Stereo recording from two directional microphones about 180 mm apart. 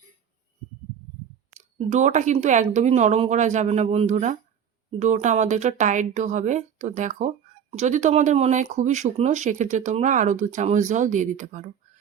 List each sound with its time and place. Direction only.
1.5 s speech: 40° right (ahead or behind)